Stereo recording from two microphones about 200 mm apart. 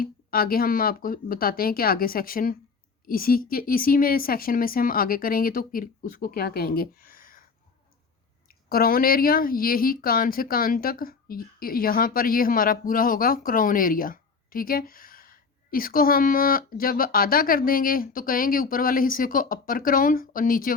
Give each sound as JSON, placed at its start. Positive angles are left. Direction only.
{"t": 0.0, "sound": "speech", "side_deg": 45}
{"t": 8.7, "sound": "speech", "side_deg": 50}